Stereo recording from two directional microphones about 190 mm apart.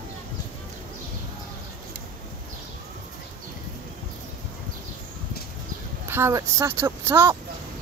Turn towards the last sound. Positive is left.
turn(degrees=-15)  # may be behind; listen again after turning